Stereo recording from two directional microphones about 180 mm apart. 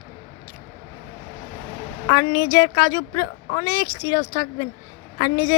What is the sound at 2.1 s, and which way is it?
Speech, 20° left (ahead or behind).